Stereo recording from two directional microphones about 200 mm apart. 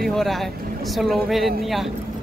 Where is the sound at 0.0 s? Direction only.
Centre (ahead or behind).